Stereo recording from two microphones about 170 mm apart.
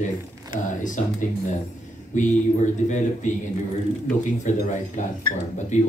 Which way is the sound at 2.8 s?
45° left (ahead or behind).